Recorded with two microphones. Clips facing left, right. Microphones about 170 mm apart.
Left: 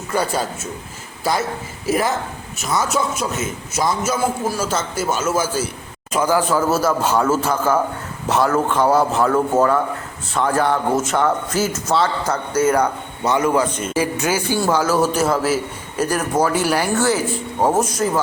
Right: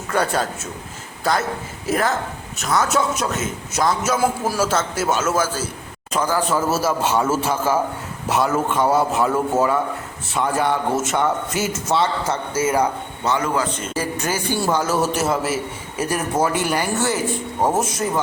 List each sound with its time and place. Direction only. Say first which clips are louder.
0.1 s a man's voice: even; centre (ahead or behind)
6.1 s a man's voice: left 3 dB; 10° left (ahead or behind)
6.5 s a man's voice: left 2 dB; 5° right (ahead or behind)
12.5 s a man's voice: left 3 dB; 5° right (ahead or behind)
13.2 s a man's voice: left 4 dB; 15° left (ahead or behind)
14.6 s a man's voice: left 3 dB; centre (ahead or behind)